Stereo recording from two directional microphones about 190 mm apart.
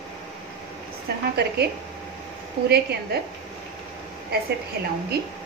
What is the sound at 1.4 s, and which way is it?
Speech, 60° right (ahead or behind).